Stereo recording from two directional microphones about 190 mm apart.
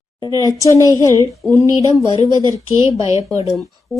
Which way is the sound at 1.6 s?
15° right (ahead or behind).